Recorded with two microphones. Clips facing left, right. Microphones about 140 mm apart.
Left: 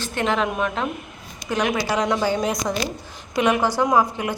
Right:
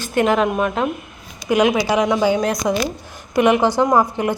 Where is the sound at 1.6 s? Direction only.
20° right (ahead or behind).